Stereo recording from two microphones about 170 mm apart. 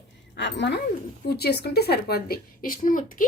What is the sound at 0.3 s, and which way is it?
Speech, 90° left.